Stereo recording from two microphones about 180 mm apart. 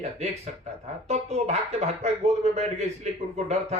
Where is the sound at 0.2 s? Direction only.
35° right (ahead or behind).